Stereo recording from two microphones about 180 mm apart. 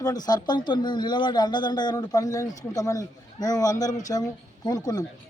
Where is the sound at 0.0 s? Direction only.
20° left (ahead or behind).